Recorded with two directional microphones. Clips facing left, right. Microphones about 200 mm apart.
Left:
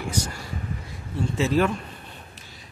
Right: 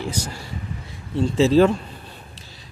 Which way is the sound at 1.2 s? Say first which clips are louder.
Right 7 dB; 30° right (ahead or behind).